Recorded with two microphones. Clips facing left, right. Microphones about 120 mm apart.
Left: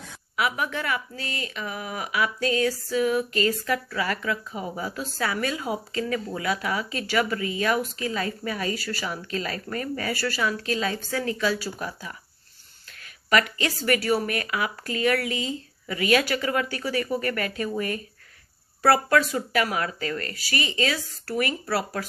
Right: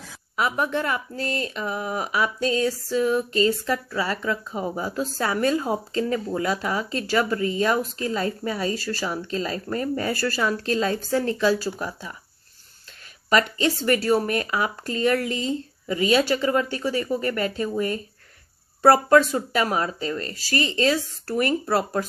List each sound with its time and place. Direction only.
0.4 s speech: 35° right (ahead or behind)
10.1 s speech: 40° right (ahead or behind)
13.3 s speech: 30° right (ahead or behind)